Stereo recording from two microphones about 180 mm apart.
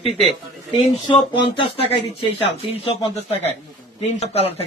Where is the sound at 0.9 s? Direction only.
30° left (ahead or behind).